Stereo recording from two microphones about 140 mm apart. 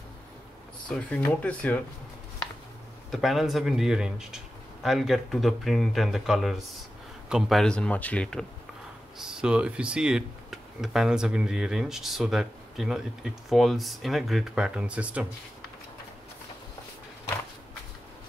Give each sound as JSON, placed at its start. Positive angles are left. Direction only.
{"t": 0.8, "sound": "speech", "side_deg": 10}
{"t": 3.1, "sound": "speech", "side_deg": 0}
{"t": 9.2, "sound": "speech", "side_deg": -5}